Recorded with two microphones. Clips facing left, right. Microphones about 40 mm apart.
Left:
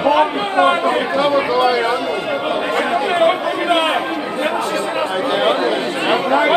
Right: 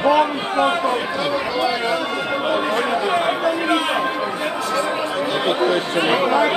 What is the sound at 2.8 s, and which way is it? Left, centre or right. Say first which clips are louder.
Speech: left 3 dB; left.